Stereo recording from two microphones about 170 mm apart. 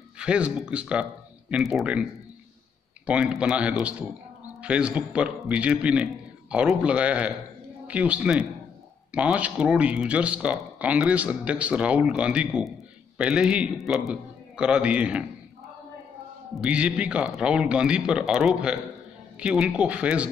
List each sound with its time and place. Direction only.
0.2 s a man's voice: 5° right (ahead or behind)
3.1 s a man's voice: 5° right (ahead or behind)
16.6 s a man's voice: 5° right (ahead or behind)